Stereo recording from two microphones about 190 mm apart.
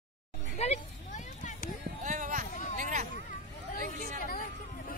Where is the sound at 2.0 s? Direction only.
45° right (ahead or behind).